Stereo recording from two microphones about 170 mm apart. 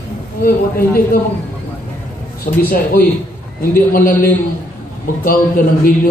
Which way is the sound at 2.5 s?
55° left (ahead or behind).